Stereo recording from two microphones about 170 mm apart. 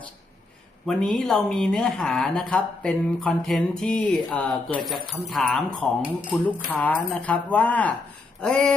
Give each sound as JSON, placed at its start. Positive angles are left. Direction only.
{"t": 0.9, "sound": "speech", "side_deg": 5}